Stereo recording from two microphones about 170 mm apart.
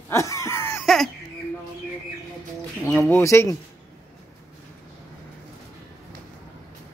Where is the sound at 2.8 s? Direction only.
15° left (ahead or behind).